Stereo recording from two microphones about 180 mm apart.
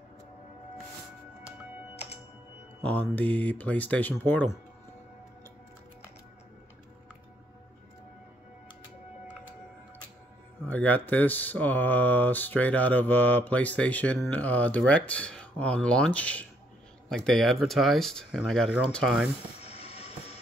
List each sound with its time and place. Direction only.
2.8 s speech: 10° left (ahead or behind)
10.7 s speech: 10° left (ahead or behind)
19.6 s train: 35° left (ahead or behind)